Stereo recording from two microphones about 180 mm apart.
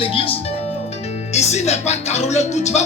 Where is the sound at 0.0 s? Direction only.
30° left (ahead or behind).